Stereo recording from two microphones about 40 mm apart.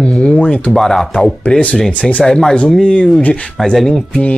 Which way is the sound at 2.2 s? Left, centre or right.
Centre.